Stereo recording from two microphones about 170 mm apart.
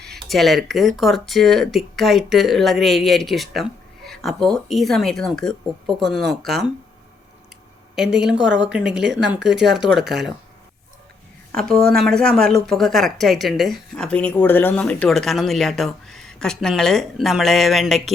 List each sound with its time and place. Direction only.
0.0 s speech: centre (ahead or behind)
7.9 s speech: 5° right (ahead or behind)
8.4 s a woman's voice: 90° right
8.7 s speech: 5° right (ahead or behind)
11.9 s speech: 5° left (ahead or behind)